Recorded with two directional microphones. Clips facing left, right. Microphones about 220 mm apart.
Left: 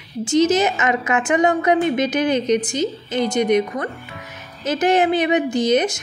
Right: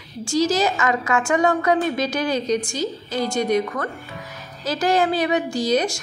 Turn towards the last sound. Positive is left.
turn(degrees=20)  # may be behind; listen again after turning